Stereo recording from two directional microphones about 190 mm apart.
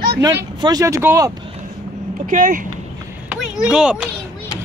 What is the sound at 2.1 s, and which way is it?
Speech, 45° right (ahead or behind).